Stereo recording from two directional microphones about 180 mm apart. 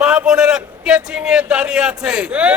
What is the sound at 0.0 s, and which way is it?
A man's voice, 5° right (ahead or behind).